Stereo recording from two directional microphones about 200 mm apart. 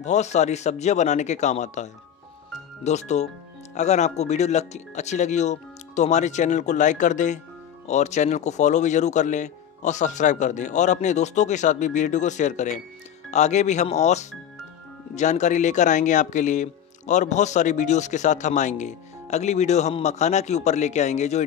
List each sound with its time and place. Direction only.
0.0 s speech: 35° left (ahead or behind)